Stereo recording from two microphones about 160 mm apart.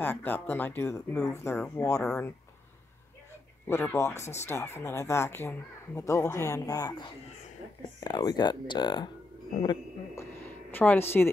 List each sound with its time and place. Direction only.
0.0 s speech: 10° left (ahead or behind)
2.0 s speech: 5° left (ahead or behind)
3.6 s speech: 15° left (ahead or behind)
10.1 s a woman's voice: 10° left (ahead or behind)